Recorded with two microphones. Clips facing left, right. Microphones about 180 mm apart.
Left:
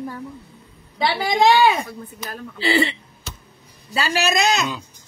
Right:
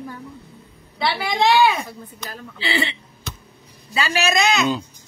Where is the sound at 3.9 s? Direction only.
35° left (ahead or behind).